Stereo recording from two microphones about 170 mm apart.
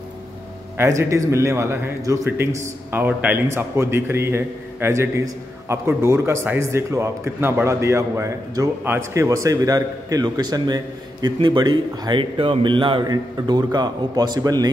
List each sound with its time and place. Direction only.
0.7 s a man's voice: 20° right (ahead or behind)